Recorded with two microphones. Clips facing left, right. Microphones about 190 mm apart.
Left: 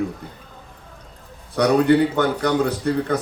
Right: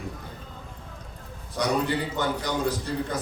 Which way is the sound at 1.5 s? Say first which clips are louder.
Left 10 dB; 60° left (ahead or behind).